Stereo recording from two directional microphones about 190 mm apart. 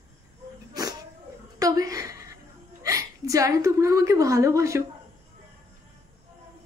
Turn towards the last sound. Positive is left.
turn(degrees=-15)  # may be behind; listen again after turning